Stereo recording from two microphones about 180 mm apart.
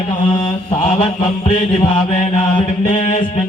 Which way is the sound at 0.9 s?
35° left (ahead or behind).